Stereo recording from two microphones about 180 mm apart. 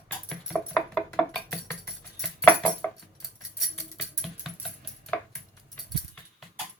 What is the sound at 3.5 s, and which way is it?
Music, centre (ahead or behind).